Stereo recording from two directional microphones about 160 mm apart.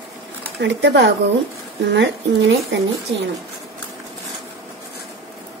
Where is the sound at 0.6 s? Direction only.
90° right.